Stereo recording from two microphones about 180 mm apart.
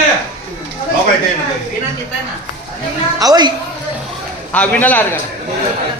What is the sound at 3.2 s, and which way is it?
Speech, 20° right (ahead or behind).